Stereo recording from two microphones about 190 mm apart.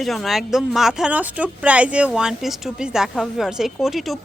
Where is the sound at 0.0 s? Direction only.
Centre (ahead or behind).